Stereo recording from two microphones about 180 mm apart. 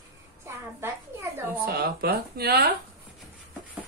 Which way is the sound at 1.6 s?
55° right (ahead or behind).